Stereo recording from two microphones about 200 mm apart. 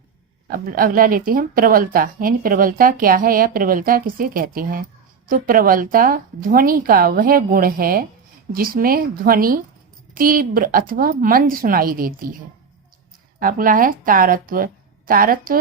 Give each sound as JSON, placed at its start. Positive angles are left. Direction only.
{"t": 0.5, "sound": "a woman's voice", "side_deg": -45}
{"t": 13.4, "sound": "a woman's voice", "side_deg": -45}